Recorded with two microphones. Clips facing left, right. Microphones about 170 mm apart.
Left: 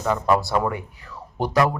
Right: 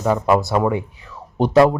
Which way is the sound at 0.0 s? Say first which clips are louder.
Right 4 dB; 15° right (ahead or behind).